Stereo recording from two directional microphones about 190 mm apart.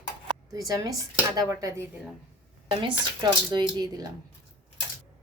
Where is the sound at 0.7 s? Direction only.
20° right (ahead or behind).